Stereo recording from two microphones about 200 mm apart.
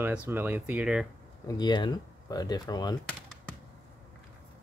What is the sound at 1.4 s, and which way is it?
Speech, 20° left (ahead or behind).